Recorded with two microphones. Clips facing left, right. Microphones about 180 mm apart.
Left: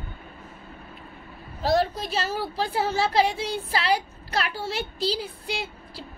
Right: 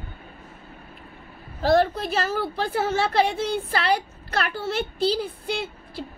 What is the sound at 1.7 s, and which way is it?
A woman's voice, 55° right (ahead or behind).